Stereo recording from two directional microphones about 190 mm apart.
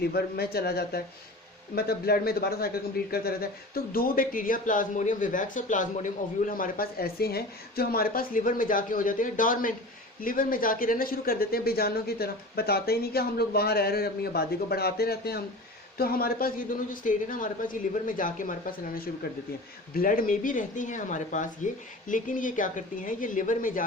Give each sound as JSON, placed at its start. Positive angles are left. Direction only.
{"t": 0.0, "sound": "a man's voice", "side_deg": 55}